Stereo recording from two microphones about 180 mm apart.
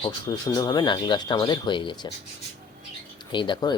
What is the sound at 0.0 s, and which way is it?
Speech, 20° left (ahead or behind).